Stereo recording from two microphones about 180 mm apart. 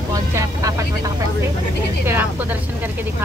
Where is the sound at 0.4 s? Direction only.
20° right (ahead or behind).